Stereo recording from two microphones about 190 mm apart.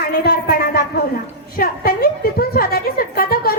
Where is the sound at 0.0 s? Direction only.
55° left (ahead or behind).